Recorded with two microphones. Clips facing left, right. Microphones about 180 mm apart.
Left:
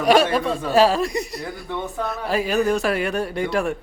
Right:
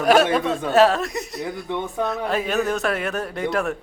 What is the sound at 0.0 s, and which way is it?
A man's voice, centre (ahead or behind).